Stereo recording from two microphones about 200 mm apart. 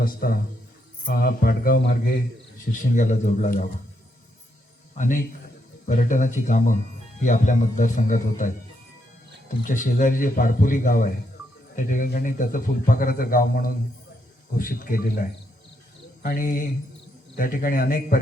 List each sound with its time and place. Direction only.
0.0 s a man's voice: 45° left (ahead or behind)
4.9 s a man's voice: 40° left (ahead or behind)
9.6 s a man's voice: 40° left (ahead or behind)
16.2 s a man's voice: 45° left (ahead or behind)